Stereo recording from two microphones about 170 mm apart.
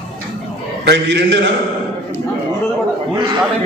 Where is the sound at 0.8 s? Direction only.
85° right.